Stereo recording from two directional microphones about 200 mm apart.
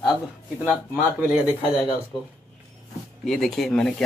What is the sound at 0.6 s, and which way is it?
Speech, 10° right (ahead or behind).